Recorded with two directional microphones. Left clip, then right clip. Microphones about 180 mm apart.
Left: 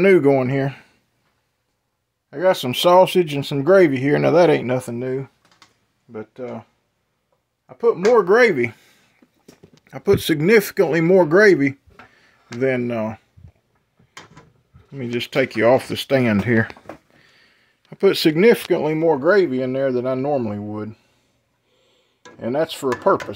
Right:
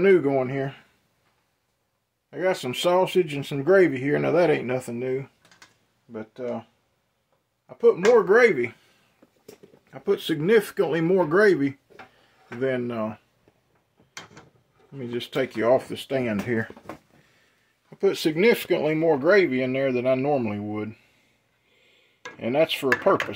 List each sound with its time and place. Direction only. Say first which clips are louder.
0.0 s speech: left 5 dB; 70° left (ahead or behind)
2.3 s speech: left 7 dB; 50° left (ahead or behind)
7.6 s speech: left 1 dB; 35° left (ahead or behind)
8.1 s speech: left 5 dB; 45° left (ahead or behind)
15.0 s speech: left 7 dB; 45° left (ahead or behind)
17.8 s speech: left 7 dB; 50° left (ahead or behind)
18.7 s speech: left 4 dB; 25° left (ahead or behind); by 21.0 s 10° left (ahead or behind)
22.4 s speech: left 1 dB; 10° left (ahead or behind)